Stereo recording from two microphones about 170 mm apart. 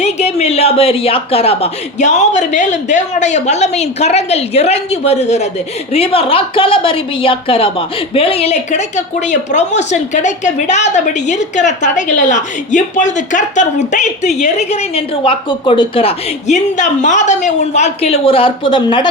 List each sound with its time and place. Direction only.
0.0 s a woman's voice: 40° left (ahead or behind)